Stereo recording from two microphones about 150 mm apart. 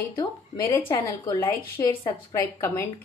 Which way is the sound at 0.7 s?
20° left (ahead or behind).